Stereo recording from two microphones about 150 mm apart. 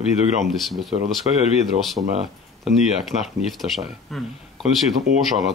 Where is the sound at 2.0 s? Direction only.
40° right (ahead or behind).